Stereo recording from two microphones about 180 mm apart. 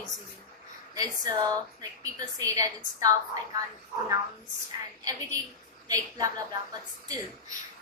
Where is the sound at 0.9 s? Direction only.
20° right (ahead or behind).